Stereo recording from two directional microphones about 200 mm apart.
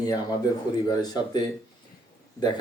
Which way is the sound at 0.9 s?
20° left (ahead or behind).